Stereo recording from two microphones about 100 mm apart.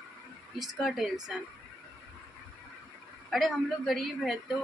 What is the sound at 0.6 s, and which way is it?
Speech, centre (ahead or behind).